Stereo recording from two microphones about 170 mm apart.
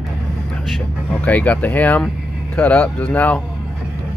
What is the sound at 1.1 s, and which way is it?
Speech, 10° left (ahead or behind).